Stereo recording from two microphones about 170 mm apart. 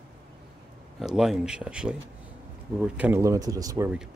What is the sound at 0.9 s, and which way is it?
Speech, centre (ahead or behind).